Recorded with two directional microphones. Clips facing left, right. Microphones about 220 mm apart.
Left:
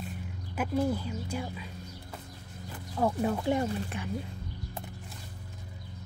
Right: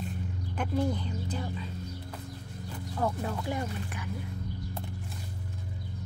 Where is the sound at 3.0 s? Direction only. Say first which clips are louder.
Left 4 dB; 15° left (ahead or behind).